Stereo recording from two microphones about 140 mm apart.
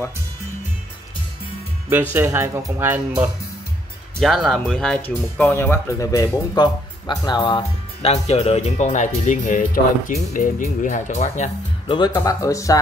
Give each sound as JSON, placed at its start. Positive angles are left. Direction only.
{"t": 2.1, "sound": "speech", "side_deg": -15}
{"t": 4.2, "sound": "speech", "side_deg": 0}
{"t": 12.3, "sound": "speech", "side_deg": 20}